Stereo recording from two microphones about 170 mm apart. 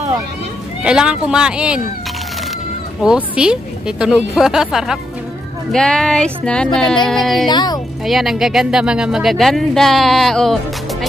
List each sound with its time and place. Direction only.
0.8 s speech: 5° right (ahead or behind)
3.0 s speech: 5° right (ahead or behind)
7.4 s speech: 25° left (ahead or behind)
8.0 s speech: centre (ahead or behind)